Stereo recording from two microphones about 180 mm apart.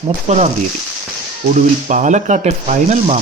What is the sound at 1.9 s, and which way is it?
Speech, 45° right (ahead or behind).